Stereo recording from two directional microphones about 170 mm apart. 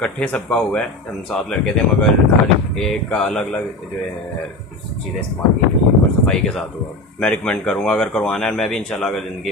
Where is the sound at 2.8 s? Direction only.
5° left (ahead or behind).